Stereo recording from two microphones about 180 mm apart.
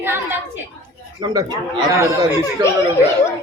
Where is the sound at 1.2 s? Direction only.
20° right (ahead or behind).